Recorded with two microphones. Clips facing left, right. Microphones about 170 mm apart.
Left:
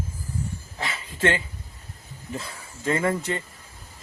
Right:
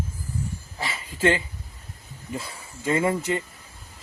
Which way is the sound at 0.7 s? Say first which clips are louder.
Left 1 dB; 5° right (ahead or behind).